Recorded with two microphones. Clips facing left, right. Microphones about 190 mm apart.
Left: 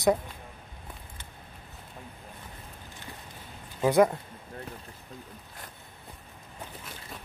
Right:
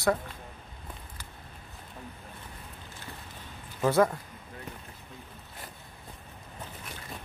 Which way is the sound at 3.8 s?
15° left (ahead or behind).